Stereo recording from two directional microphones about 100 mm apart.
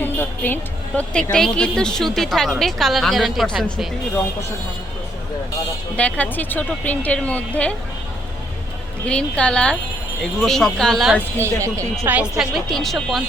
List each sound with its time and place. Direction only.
0.0 s a woman's voice: 20° left (ahead or behind); by 3.8 s centre (ahead or behind)
6.0 s speech: 15° left (ahead or behind)
9.0 s a woman's voice: 10° left (ahead or behind)
11.3 s speech: 30° right (ahead or behind)
12.0 s a woman's voice: 15° right (ahead or behind)
12.4 s a woman's voice: centre (ahead or behind)